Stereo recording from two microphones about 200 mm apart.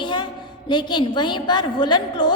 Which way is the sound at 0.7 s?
20° left (ahead or behind).